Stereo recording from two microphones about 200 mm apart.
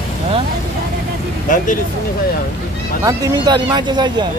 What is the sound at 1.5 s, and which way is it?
Speech, 40° left (ahead or behind).